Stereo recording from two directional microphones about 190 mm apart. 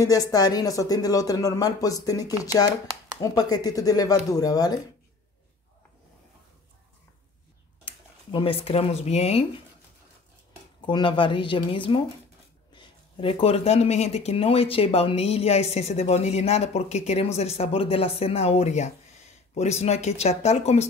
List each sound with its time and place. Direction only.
0.0 s speech: 20° left (ahead or behind)
7.8 s speech: 25° left (ahead or behind)
10.9 s speech: 25° left (ahead or behind)